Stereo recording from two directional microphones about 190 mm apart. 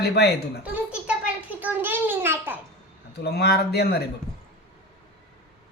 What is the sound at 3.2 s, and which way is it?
Speech, 60° left (ahead or behind).